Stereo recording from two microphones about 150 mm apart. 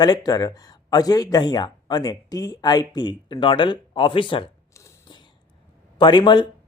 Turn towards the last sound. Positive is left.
turn(degrees=30)  # may be behind; listen again after turning